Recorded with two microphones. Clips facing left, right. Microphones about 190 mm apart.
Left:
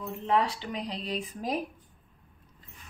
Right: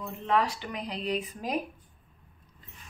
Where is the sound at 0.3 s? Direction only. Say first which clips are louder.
Even; 25° left (ahead or behind).